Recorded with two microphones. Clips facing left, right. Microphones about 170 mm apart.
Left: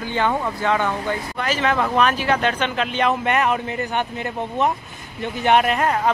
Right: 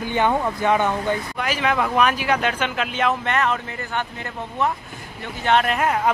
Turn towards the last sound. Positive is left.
turn(degrees=-5)  # may be behind; listen again after turning